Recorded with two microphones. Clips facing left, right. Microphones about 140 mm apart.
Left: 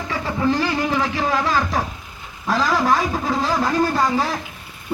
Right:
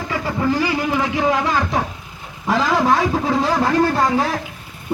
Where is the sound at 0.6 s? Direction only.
10° right (ahead or behind).